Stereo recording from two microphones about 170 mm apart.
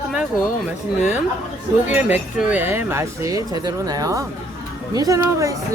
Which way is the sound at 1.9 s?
10° right (ahead or behind).